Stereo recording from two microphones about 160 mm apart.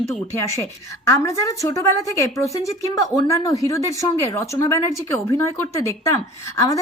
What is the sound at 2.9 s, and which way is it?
A woman's voice, 20° left (ahead or behind).